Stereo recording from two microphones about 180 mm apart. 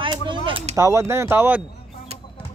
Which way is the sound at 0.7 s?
15° right (ahead or behind).